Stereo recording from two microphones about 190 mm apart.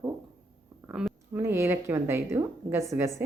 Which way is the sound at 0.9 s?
5° right (ahead or behind).